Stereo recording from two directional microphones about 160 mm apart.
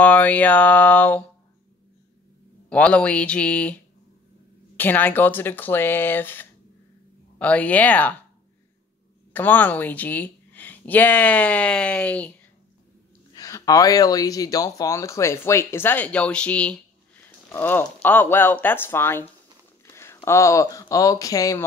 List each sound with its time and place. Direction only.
0.0 s speech: 10° left (ahead or behind)
2.7 s speech: 10° left (ahead or behind)
9.3 s speech: 10° left (ahead or behind)
13.3 s speech: 20° left (ahead or behind)
19.9 s a sound: 15° left (ahead or behind)
20.2 s speech: 20° left (ahead or behind)